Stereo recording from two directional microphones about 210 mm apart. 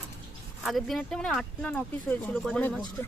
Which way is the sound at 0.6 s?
Centre (ahead or behind).